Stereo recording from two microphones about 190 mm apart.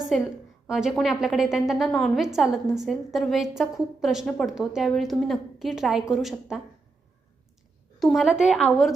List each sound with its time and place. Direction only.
0.7 s a woman's voice: centre (ahead or behind)
7.9 s a woman's voice: centre (ahead or behind)